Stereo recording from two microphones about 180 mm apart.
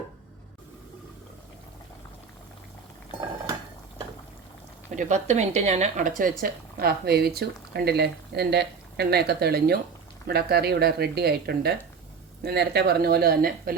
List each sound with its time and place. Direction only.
4.9 s speech: 40° right (ahead or behind)
6.4 s speech: 60° right (ahead or behind)